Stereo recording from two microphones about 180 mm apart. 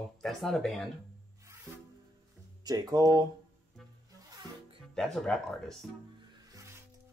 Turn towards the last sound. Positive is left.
turn(degrees=-15)  # may be behind; listen again after turning